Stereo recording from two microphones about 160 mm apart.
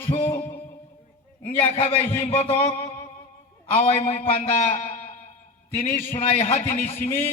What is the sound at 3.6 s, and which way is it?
A man's voice, 40° left (ahead or behind).